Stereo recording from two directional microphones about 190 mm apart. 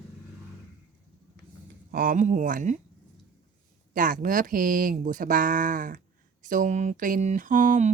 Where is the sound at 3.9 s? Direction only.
45° right (ahead or behind).